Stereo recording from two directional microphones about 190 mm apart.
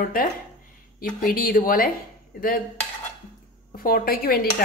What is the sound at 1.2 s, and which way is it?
Speech, 50° left (ahead or behind).